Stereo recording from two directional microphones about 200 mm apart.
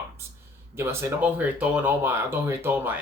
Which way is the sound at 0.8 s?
10° right (ahead or behind).